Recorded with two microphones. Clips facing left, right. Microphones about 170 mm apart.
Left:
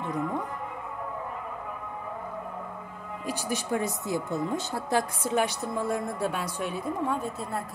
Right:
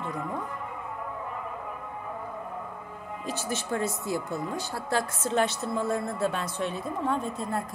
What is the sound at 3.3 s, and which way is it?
Speech, 10° left (ahead or behind).